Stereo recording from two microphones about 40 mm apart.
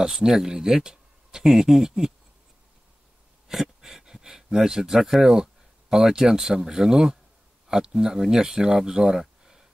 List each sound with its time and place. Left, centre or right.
0.2 s speech: centre
3.4 s a sound: centre
5.3 s speech: centre